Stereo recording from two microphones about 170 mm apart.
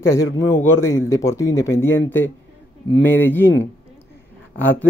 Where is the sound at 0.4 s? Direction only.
15° left (ahead or behind).